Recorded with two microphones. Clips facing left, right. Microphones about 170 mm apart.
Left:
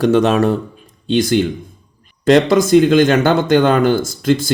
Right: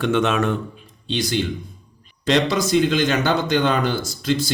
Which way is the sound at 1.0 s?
50° left (ahead or behind).